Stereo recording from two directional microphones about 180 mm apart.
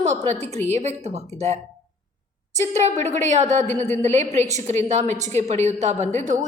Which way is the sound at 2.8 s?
40° right (ahead or behind).